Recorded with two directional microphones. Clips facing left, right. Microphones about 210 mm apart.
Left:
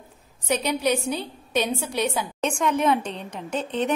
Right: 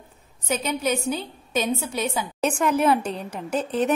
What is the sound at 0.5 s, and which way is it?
A woman's voice, centre (ahead or behind).